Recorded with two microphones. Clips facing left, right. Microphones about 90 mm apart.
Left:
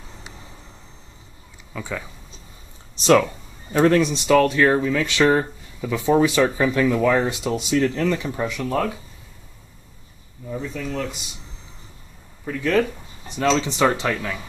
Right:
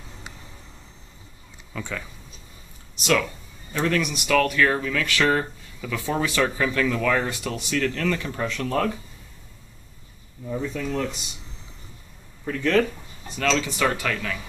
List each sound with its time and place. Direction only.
1.7 s speech: 10° left (ahead or behind)
3.0 s speech: 30° left (ahead or behind); by 8.9 s 10° left (ahead or behind)
10.4 s speech: centre (ahead or behind)
12.4 s speech: 5° left (ahead or behind)
13.3 s speech: 25° left (ahead or behind)